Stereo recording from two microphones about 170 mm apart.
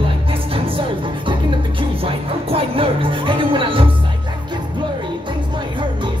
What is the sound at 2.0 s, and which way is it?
Music, 35° right (ahead or behind).